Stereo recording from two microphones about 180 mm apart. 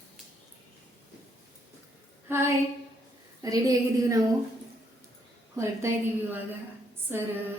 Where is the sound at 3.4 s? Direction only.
20° right (ahead or behind).